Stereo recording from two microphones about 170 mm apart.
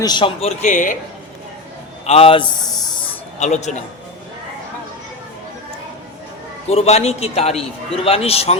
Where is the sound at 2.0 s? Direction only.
35° left (ahead or behind).